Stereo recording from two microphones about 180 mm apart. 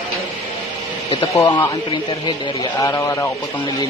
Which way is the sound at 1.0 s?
25° left (ahead or behind).